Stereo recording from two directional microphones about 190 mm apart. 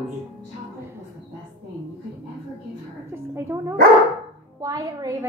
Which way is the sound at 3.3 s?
15° right (ahead or behind).